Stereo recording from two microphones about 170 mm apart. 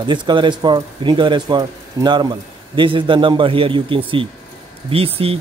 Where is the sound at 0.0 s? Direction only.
25° right (ahead or behind).